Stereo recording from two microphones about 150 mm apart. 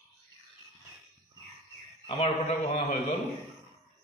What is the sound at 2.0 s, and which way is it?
Speech, 40° left (ahead or behind).